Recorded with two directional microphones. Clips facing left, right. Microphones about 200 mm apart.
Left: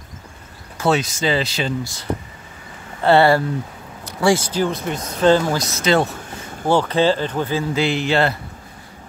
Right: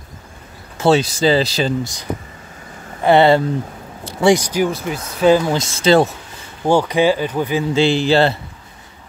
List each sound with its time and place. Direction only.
0.7 s speech: 30° right (ahead or behind)
3.0 s speech: 20° right (ahead or behind)
5.5 s speech: 25° right (ahead or behind)
6.7 s speech: 15° right (ahead or behind)
7.7 s speech: 30° right (ahead or behind)